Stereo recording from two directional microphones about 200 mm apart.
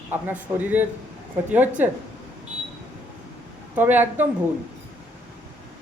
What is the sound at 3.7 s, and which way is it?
Speech, 10° right (ahead or behind).